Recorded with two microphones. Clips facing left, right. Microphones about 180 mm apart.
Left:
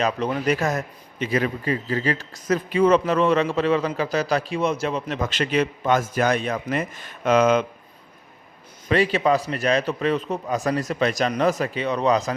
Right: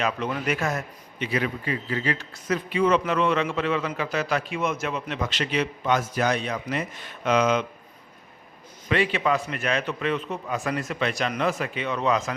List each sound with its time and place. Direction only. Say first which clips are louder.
0.0 s a man's voice: left 4 dB; 35° left (ahead or behind)
8.9 s a man's voice: left 4 dB; 35° left (ahead or behind)